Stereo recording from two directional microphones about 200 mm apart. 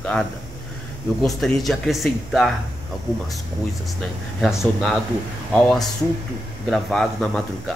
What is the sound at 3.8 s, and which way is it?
A man's voice, centre (ahead or behind).